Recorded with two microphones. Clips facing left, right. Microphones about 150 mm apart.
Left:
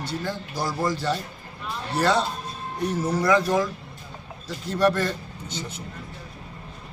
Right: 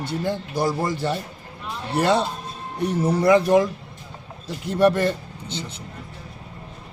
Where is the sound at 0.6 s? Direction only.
55° right (ahead or behind).